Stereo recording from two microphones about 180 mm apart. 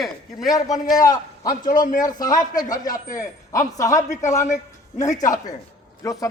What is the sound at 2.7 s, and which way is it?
Speech, 45° left (ahead or behind).